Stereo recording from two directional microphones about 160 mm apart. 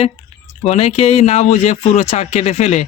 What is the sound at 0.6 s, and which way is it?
Speech, 40° left (ahead or behind).